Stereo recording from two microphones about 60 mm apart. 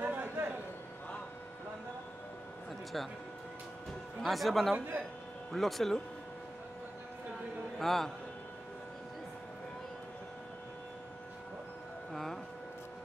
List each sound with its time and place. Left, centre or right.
0.0 s a sound: right
4.2 s speech: centre
4.7 s speech: right
5.5 s speech: centre
7.8 s speech: centre
12.1 s music: centre